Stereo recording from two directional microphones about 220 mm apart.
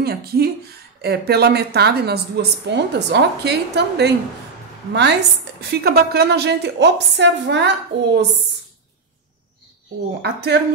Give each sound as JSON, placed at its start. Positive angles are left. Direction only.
{"t": 0.0, "sound": "a woman's voice", "side_deg": -45}
{"t": 5.6, "sound": "a woman's voice", "side_deg": -45}
{"t": 10.2, "sound": "a woman's voice", "side_deg": -50}